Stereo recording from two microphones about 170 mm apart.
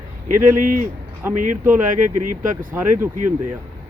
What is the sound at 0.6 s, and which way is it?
Speech, 55° right (ahead or behind).